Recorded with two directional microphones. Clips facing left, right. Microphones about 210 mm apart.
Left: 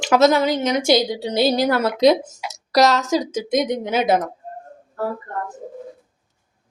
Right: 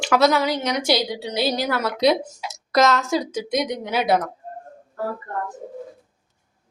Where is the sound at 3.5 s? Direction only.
25° left (ahead or behind).